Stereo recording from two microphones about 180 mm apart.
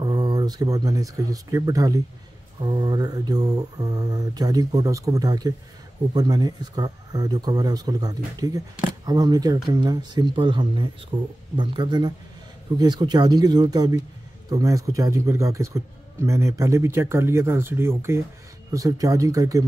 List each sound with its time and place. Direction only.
0.0 s speech: 20° right (ahead or behind)
2.6 s mantra: 25° right (ahead or behind)
14.5 s speech: 20° right (ahead or behind)
18.7 s mantra: 20° right (ahead or behind)